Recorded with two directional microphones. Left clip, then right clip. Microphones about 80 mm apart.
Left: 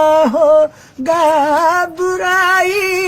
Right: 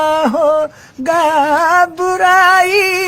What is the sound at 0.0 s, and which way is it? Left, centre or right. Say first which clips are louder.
Music: left 2 dB; right.